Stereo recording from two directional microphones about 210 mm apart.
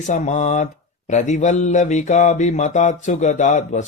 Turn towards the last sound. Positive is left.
turn(degrees=35)  # may be behind; listen again after turning